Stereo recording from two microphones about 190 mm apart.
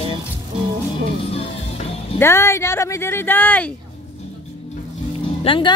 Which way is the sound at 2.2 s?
15° left (ahead or behind).